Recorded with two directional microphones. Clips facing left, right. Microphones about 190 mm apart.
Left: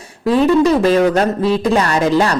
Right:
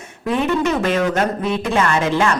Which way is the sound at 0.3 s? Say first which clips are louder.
Left 7 dB; 35° left (ahead or behind).